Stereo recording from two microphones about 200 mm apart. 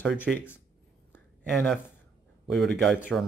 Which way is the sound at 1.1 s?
10° left (ahead or behind).